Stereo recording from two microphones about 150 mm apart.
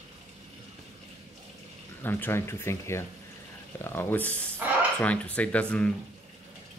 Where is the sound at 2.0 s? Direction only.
15° left (ahead or behind).